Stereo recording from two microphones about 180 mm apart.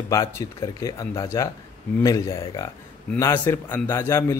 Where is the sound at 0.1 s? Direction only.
15° left (ahead or behind).